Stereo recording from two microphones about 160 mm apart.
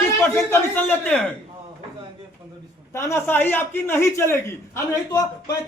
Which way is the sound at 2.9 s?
15° left (ahead or behind).